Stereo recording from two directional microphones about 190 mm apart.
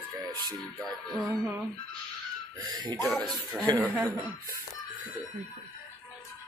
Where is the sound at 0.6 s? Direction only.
Centre (ahead or behind).